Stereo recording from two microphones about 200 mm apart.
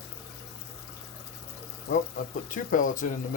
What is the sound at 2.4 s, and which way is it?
Speech, 40° left (ahead or behind).